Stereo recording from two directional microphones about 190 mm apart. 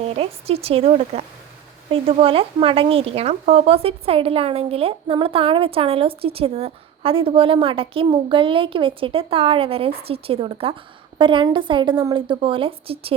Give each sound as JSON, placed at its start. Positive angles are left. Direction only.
{"t": 0.0, "sound": "speech", "side_deg": -30}